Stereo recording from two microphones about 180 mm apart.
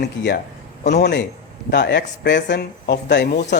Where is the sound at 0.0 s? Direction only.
70° left (ahead or behind).